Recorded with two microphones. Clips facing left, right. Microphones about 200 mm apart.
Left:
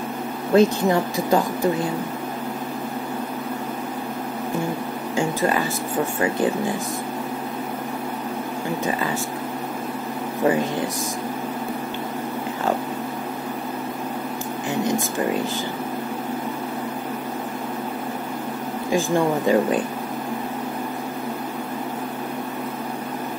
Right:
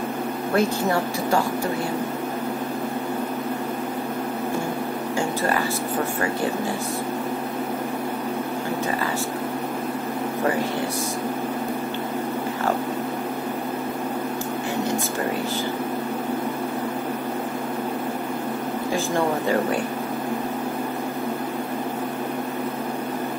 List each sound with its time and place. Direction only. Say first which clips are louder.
0.6 s speech: left 5 dB; 15° left (ahead or behind)
5.1 s a sound: left 3 dB; 15° left (ahead or behind)
18.9 s speech: left 4 dB; 15° left (ahead or behind)